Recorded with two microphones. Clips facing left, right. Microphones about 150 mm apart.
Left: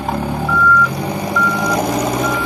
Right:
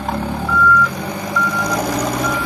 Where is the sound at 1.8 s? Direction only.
25° left (ahead or behind).